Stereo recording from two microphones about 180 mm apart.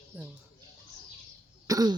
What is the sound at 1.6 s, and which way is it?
Cough, 20° right (ahead or behind).